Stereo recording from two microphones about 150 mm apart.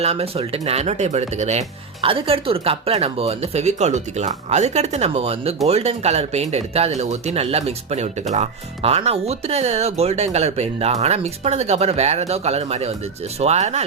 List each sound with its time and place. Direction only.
0.0 s speech: 45° right (ahead or behind)